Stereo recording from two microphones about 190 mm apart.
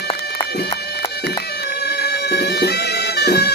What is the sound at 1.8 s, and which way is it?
Bagpipes, 60° left (ahead or behind).